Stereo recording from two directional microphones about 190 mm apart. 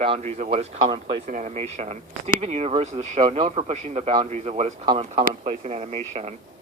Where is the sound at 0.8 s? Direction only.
25° right (ahead or behind).